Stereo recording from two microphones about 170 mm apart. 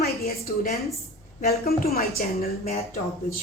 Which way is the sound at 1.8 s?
60° left (ahead or behind).